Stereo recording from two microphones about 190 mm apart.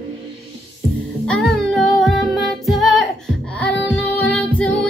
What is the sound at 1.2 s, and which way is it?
Music, centre (ahead or behind).